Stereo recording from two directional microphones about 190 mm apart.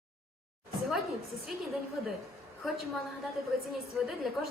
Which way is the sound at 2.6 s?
Centre (ahead or behind).